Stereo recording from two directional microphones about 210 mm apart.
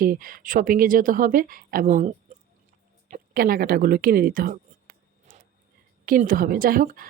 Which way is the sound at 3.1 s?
45° right (ahead or behind).